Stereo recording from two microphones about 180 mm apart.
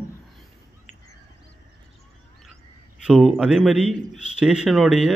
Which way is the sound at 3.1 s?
5° right (ahead or behind).